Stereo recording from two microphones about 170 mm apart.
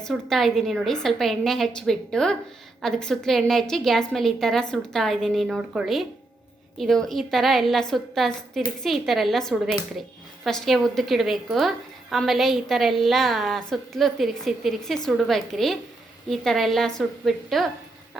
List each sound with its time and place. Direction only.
0.0 s a woman's voice: centre (ahead or behind)